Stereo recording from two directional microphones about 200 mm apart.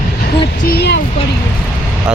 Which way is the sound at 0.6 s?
50° left (ahead or behind).